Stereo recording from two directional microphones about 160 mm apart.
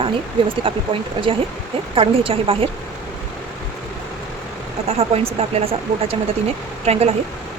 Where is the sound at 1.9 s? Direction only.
35° right (ahead or behind).